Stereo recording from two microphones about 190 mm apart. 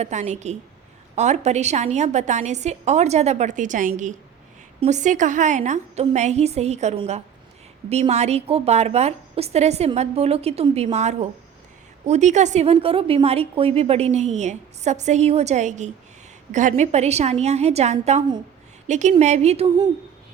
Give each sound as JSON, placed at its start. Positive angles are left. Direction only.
{"t": 0.0, "sound": "a woman's voice", "side_deg": -40}